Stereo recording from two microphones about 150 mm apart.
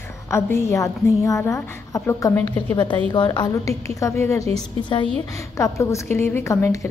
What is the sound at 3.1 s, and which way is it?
Speech, 30° left (ahead or behind).